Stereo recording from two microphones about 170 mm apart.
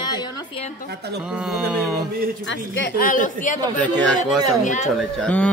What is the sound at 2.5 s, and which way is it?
A woman's voice, 75° left (ahead or behind).